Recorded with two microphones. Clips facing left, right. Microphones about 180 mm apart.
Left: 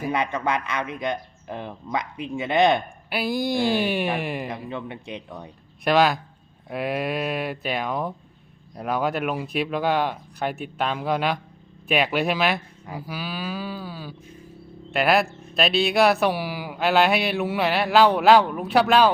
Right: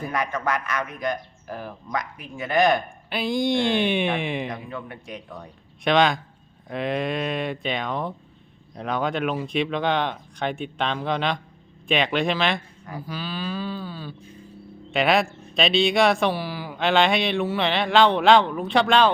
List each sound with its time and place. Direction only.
0.8 s speech: 25° left (ahead or behind)
3.1 s speech: 5° left (ahead or behind)
4.7 s speech: 25° left (ahead or behind)
5.8 s speech: 5° left (ahead or behind)